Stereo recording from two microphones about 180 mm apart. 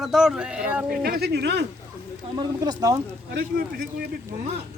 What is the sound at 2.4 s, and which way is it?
Speech, 20° right (ahead or behind).